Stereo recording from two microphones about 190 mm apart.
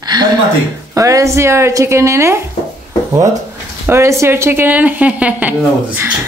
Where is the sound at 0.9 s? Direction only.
15° right (ahead or behind).